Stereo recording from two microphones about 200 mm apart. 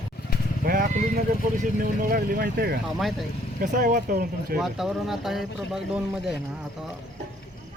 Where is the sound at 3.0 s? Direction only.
Centre (ahead or behind).